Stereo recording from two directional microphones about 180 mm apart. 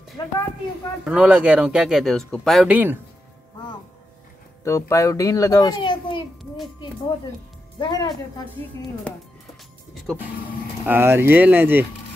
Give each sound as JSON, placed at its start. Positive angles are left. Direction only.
{"t": 0.2, "sound": "a woman's voice", "side_deg": 25}
{"t": 1.0, "sound": "speech", "side_deg": -5}
{"t": 4.6, "sound": "a child's voice", "side_deg": 15}
{"t": 7.8, "sound": "a woman's voice", "side_deg": 25}
{"t": 9.1, "sound": "a child's voice", "side_deg": 5}
{"t": 10.9, "sound": "speech", "side_deg": -10}